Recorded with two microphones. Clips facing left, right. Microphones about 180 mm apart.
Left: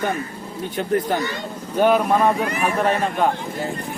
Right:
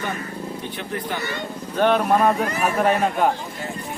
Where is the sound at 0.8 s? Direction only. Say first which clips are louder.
Left 10 dB; 45° left (ahead or behind).